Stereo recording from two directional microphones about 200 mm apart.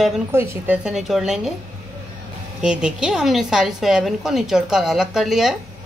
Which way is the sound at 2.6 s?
5° right (ahead or behind).